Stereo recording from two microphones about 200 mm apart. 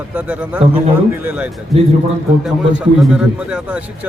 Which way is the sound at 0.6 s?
30° right (ahead or behind).